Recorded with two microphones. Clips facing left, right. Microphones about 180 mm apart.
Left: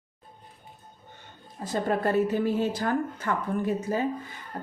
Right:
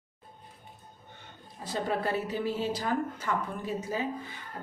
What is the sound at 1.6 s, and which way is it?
A woman's voice, 50° left (ahead or behind).